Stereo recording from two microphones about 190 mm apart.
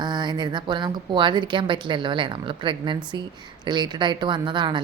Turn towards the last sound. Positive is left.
turn(degrees=-25)  # may be behind; listen again after turning